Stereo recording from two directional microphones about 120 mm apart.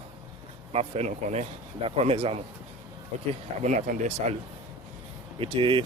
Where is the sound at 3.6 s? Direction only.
90° right.